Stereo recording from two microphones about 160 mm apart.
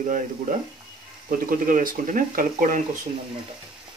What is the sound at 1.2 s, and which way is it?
Speech, 60° right (ahead or behind).